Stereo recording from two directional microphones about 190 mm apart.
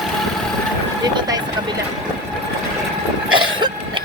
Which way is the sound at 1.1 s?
20° right (ahead or behind).